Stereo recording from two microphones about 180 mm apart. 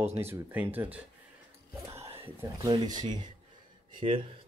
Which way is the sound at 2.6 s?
20° right (ahead or behind).